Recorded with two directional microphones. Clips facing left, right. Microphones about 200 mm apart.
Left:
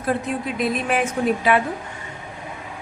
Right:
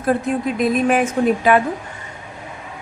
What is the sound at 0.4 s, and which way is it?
Speech, 45° right (ahead or behind).